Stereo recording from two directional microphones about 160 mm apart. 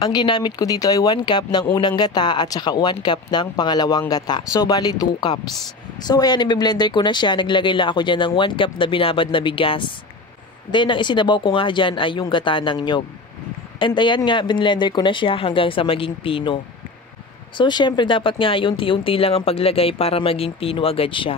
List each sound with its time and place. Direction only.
0.0 s speech: 30° left (ahead or behind)
17.6 s speech: 30° left (ahead or behind)